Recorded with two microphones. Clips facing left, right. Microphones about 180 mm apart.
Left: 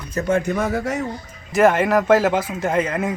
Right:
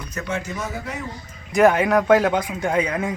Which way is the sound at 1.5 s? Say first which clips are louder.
Even; centre (ahead or behind).